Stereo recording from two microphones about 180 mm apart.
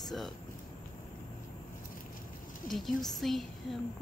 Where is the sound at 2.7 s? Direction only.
Centre (ahead or behind).